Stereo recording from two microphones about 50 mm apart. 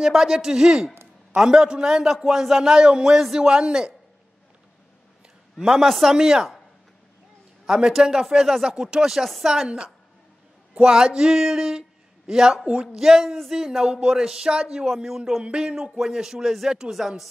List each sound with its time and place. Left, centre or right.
0.0 s speech: centre
5.6 s speech: centre
7.6 s speech: centre
10.7 s speech: centre